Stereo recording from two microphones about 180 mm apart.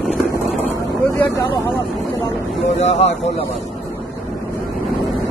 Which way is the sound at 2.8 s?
40° left (ahead or behind).